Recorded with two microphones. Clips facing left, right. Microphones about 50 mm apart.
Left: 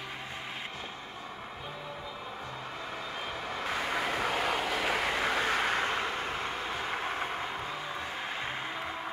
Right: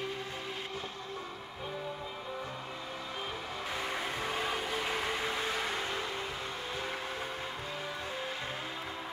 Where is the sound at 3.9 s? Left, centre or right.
Left.